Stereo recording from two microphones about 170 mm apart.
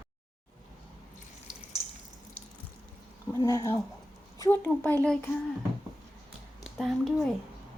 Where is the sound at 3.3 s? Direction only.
20° left (ahead or behind).